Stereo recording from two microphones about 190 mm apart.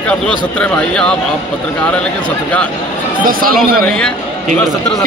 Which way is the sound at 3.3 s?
50° right (ahead or behind).